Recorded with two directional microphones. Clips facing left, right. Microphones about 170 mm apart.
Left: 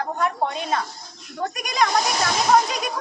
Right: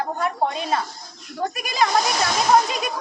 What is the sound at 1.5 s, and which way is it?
Speech, 5° right (ahead or behind).